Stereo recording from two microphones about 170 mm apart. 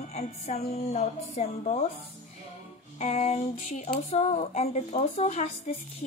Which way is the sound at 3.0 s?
40° left (ahead or behind).